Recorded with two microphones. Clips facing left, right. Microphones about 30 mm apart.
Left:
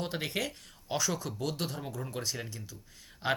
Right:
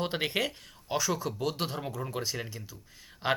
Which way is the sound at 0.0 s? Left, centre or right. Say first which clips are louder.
Right 4 dB; right.